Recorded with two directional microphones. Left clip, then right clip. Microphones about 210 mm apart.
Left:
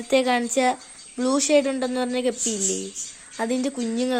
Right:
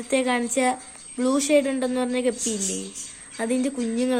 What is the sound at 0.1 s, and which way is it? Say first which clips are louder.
Speech: left 3 dB; 30° left (ahead or behind).